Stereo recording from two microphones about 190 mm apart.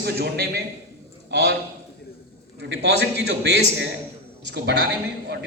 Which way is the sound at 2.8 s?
60° right (ahead or behind).